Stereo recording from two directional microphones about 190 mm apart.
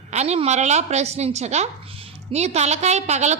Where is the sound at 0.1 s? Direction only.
35° right (ahead or behind).